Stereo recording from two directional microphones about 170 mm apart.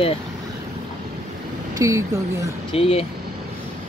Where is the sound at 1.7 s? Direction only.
20° right (ahead or behind).